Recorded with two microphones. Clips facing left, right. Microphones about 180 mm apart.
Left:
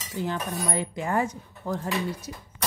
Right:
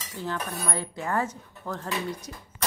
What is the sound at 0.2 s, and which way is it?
Speech, 15° left (ahead or behind).